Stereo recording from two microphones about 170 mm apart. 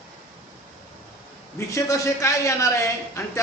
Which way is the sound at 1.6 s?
20° left (ahead or behind).